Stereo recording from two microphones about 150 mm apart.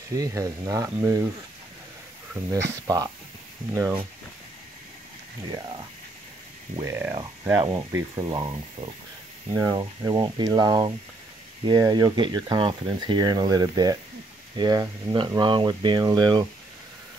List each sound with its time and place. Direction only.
0.1 s speech: 20° right (ahead or behind)
2.5 s speech: 25° right (ahead or behind)
5.5 s speech: 25° right (ahead or behind)